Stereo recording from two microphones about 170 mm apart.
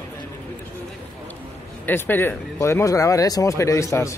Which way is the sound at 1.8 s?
10° left (ahead or behind).